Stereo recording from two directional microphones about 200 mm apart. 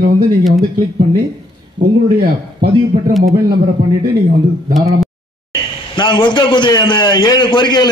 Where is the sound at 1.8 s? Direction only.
50° right (ahead or behind).